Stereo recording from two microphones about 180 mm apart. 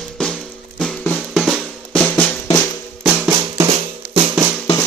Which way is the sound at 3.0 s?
5° right (ahead or behind).